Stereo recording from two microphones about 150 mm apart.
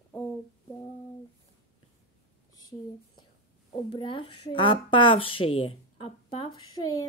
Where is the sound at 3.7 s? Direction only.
35° left (ahead or behind).